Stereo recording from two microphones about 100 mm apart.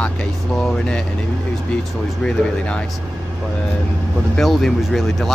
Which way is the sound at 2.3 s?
10° left (ahead or behind).